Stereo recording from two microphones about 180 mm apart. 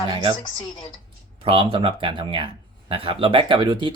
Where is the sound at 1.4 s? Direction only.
30° right (ahead or behind).